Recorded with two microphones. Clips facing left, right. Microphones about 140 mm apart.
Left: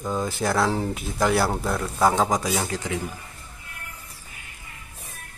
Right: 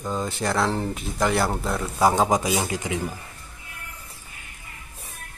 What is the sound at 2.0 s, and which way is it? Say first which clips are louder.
Speech: right 2 dB; 20° right (ahead or behind).